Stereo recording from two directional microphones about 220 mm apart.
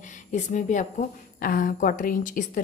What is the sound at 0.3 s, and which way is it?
A woman's voice, 35° left (ahead or behind).